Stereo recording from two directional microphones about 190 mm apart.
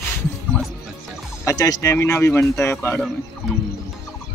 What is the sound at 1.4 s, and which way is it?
Speech, 20° left (ahead or behind).